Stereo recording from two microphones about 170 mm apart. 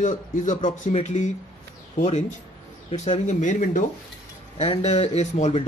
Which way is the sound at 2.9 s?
45° left (ahead or behind).